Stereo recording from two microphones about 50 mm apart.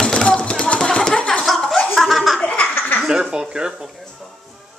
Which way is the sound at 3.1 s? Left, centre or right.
Centre.